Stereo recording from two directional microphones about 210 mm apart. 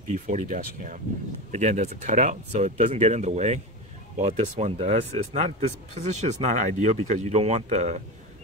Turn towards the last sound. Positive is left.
turn(degrees=-30)  # may be behind; listen again after turning